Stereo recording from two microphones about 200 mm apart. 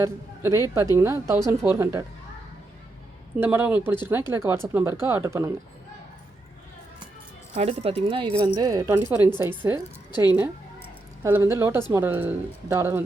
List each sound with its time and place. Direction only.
0.0 s speech: 15° right (ahead or behind)
3.4 s speech: 10° right (ahead or behind)
7.5 s speech: 30° right (ahead or behind); by 9.8 s 10° right (ahead or behind)
10.1 s a woman's voice: 20° left (ahead or behind)
11.2 s speech: 10° right (ahead or behind)